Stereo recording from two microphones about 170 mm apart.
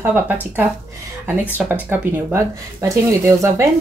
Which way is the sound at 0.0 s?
10° right (ahead or behind).